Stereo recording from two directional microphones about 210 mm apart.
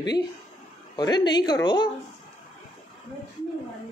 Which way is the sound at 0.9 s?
20° left (ahead or behind).